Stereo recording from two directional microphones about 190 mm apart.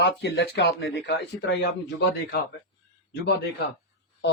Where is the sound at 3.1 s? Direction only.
60° left (ahead or behind).